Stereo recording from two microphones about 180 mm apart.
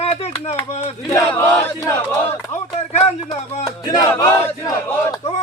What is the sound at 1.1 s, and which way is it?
Battle cry, 15° left (ahead or behind).